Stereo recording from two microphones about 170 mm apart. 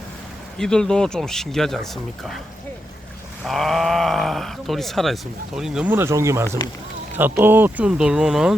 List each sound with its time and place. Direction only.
0.6 s speech: 5° left (ahead or behind)
3.4 s speech: centre (ahead or behind)